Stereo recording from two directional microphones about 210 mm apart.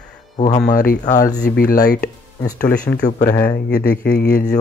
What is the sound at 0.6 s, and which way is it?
Speech, 40° left (ahead or behind).